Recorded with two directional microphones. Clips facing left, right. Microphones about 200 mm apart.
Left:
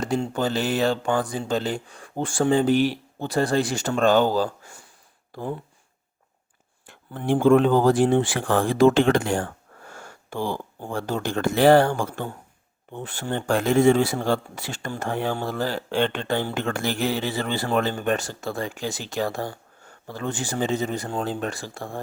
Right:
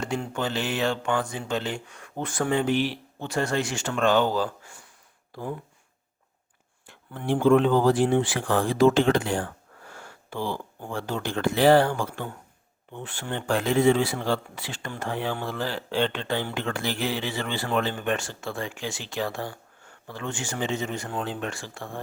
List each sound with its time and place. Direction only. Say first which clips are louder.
0.0 s speech: left 4 dB; 35° left (ahead or behind)
7.3 s speech: left 2 dB; 45° left (ahead or behind)